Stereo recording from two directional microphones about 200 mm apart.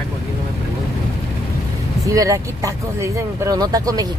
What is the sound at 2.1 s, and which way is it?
Speech, 15° right (ahead or behind).